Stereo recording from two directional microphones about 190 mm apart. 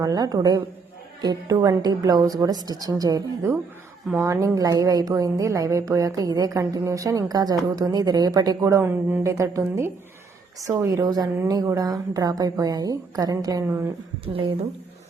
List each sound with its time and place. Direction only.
0.0 s a woman's voice: 20° right (ahead or behind)